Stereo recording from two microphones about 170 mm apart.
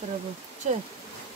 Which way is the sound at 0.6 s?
40° right (ahead or behind).